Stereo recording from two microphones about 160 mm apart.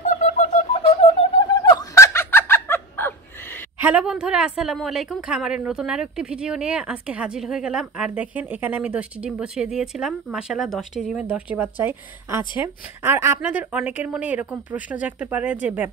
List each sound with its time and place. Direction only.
0.0 s a sound: 50° left (ahead or behind)
1.6 s fowl: 25° left (ahead or behind)
3.8 s a woman's voice: 5° right (ahead or behind)